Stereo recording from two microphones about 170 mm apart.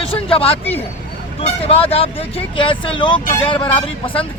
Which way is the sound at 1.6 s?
35° left (ahead or behind).